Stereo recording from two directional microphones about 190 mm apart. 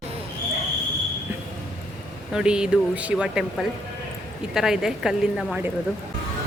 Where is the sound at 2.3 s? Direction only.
5° right (ahead or behind).